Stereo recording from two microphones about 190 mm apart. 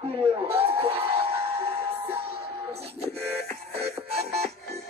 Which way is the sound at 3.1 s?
55° right (ahead or behind).